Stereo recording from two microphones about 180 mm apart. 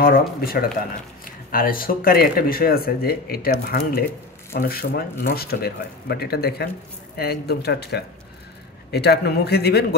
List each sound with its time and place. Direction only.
0.4 s speech: 55° left (ahead or behind)